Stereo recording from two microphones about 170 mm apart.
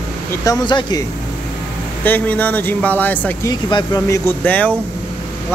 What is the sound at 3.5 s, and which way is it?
Speech, 25° left (ahead or behind).